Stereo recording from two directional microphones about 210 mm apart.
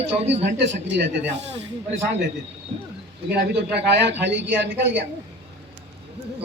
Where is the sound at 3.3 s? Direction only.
55° right (ahead or behind).